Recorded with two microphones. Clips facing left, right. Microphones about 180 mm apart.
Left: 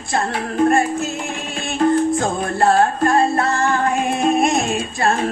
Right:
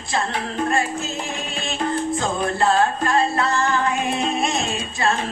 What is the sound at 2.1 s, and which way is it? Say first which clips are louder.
Music: left 3 dB; 50° left (ahead or behind).